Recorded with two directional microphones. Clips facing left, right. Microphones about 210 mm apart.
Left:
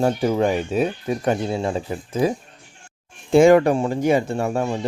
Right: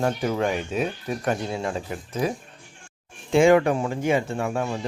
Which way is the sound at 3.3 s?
40° left (ahead or behind).